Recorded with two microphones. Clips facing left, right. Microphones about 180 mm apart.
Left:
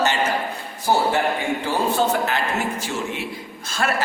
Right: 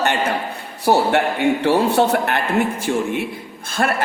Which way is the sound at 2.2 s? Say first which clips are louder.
Right 4 dB; 60° right (ahead or behind).